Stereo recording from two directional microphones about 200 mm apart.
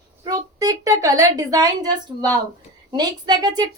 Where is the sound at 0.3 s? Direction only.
15° right (ahead or behind).